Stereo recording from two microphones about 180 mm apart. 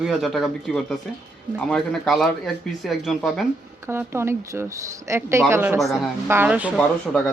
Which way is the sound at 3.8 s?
15° right (ahead or behind).